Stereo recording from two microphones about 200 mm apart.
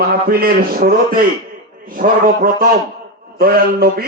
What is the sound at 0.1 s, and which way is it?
A man's voice, 50° right (ahead or behind).